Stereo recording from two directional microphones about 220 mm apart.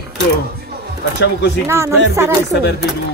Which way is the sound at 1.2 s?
50° left (ahead or behind).